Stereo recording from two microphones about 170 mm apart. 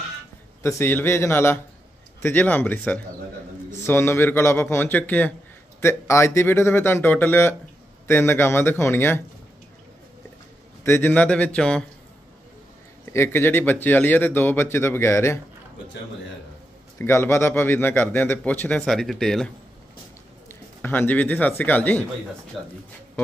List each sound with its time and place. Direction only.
0.6 s a man's voice: 15° left (ahead or behind)
10.8 s a man's voice: 15° left (ahead or behind)
13.1 s a man's voice: 15° left (ahead or behind)
17.0 s a man's voice: 15° left (ahead or behind)
20.8 s a man's voice: 10° left (ahead or behind)